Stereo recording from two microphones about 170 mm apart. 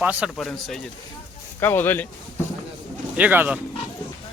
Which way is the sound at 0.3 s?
Centre (ahead or behind).